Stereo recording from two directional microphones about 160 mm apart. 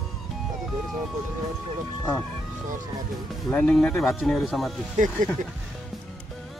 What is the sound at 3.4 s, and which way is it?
Speech, 5° left (ahead or behind).